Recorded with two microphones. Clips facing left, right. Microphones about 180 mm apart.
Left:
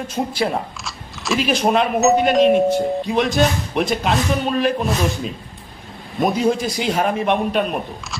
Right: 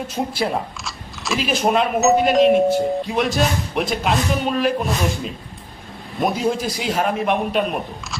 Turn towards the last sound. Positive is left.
turn(degrees=0)  # may be behind; listen again after turning